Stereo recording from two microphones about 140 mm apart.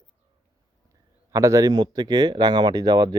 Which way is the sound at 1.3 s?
20° right (ahead or behind).